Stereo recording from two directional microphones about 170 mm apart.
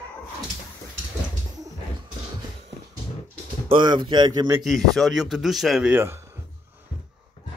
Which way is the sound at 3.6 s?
25° right (ahead or behind).